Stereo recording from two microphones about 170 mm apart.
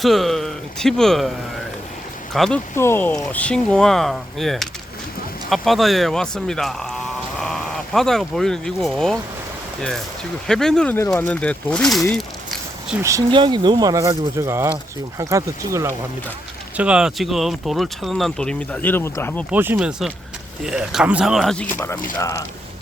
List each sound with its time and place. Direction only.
0.0 s speech: centre (ahead or behind)
2.3 s speech: centre (ahead or behind)
2.7 s speech: 15° left (ahead or behind)
10.4 s speech: 5° left (ahead or behind)
12.1 s a sound: centre (ahead or behind)
13.0 s speech: 20° right (ahead or behind)
16.7 s speech: 5° right (ahead or behind); by 19.5 s 10° left (ahead or behind)
19.5 s speech: 10° right (ahead or behind); by 22.4 s 20° left (ahead or behind)